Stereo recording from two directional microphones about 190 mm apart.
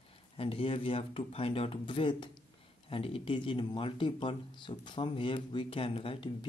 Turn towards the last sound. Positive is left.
turn(degrees=30)  # may be behind; listen again after turning